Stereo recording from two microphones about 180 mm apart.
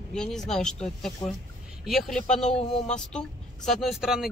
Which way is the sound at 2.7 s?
40° left (ahead or behind).